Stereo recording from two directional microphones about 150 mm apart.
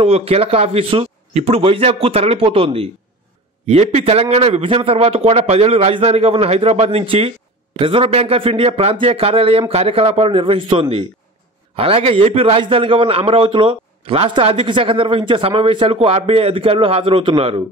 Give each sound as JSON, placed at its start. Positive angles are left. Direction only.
{"t": 0.0, "sound": "a man's voice", "side_deg": -40}